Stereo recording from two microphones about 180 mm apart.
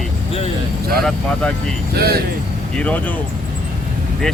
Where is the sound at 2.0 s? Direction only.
60° right (ahead or behind).